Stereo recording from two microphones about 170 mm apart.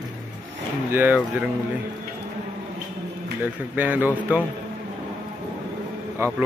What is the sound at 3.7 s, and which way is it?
Speech, 10° right (ahead or behind).